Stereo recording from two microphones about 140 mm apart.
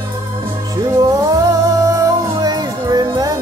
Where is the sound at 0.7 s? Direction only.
25° right (ahead or behind).